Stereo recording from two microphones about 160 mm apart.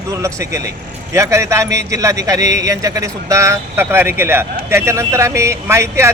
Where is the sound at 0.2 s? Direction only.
20° right (ahead or behind).